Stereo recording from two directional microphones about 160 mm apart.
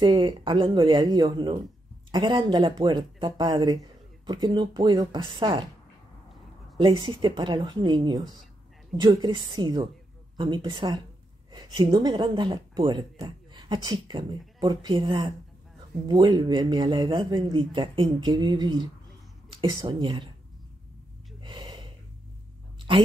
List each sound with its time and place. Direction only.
0.0 s speech: 25° right (ahead or behind)
6.8 s speech: 30° right (ahead or behind)
21.4 s gasp: 30° right (ahead or behind)
22.8 s a sound: 30° right (ahead or behind)